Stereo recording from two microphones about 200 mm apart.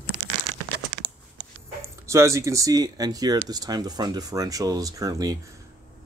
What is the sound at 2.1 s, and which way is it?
Speech, 15° right (ahead or behind).